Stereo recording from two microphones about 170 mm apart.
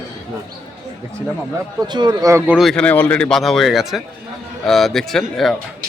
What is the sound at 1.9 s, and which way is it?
Speech, 25° right (ahead or behind).